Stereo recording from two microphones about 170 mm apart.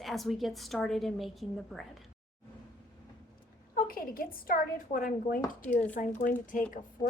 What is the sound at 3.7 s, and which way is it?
Speech, 60° left (ahead or behind).